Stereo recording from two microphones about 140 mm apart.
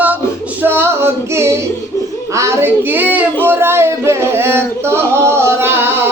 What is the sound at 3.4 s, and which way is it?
Singing, 15° right (ahead or behind).